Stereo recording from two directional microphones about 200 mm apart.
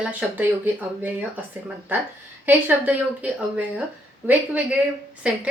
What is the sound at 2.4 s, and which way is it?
Speech, 10° right (ahead or behind).